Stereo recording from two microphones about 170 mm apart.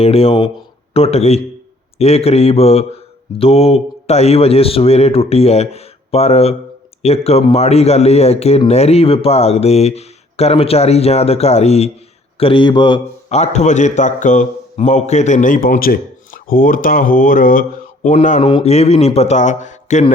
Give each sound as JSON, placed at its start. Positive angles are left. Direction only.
{"t": 0.0, "sound": "speech", "side_deg": 35}
{"t": 13.3, "sound": "a man's voice", "side_deg": 40}
{"t": 18.1, "sound": "speech", "side_deg": 40}